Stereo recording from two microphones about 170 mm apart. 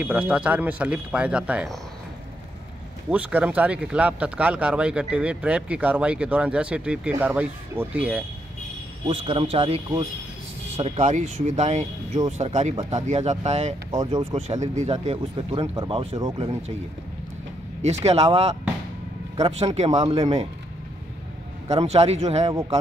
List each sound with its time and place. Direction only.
0.0 s speech: 10° right (ahead or behind)
3.1 s speech: 10° right (ahead or behind)
9.0 s speech: 30° right (ahead or behind)
10.8 s speech: 40° right (ahead or behind); by 16.4 s 25° right (ahead or behind)
17.8 s speech: 40° right (ahead or behind)
21.8 s speech: 40° right (ahead or behind)